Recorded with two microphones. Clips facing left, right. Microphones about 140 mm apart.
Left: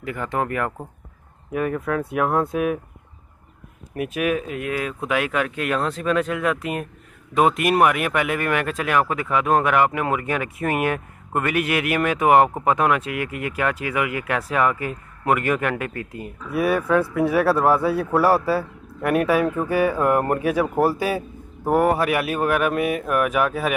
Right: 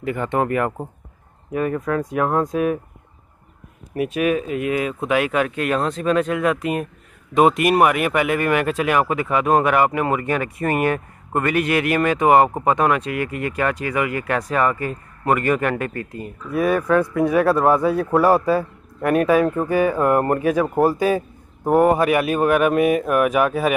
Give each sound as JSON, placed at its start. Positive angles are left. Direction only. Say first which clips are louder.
{"t": 0.0, "sound": "speech", "louder": "right 4 dB", "side_deg": 0}
{"t": 3.9, "sound": "speech", "louder": "right 3 dB", "side_deg": 0}
{"t": 19.0, "sound": "speech", "louder": "right 3 dB", "side_deg": 5}
{"t": 21.7, "sound": "speech", "louder": "right 3 dB", "side_deg": -15}
{"t": 22.0, "sound": "speech", "louder": "right 4 dB", "side_deg": 0}
{"t": 22.5, "sound": "speech", "louder": "right 4 dB", "side_deg": -10}
{"t": 22.8, "sound": "speech", "louder": "right 4 dB", "side_deg": 0}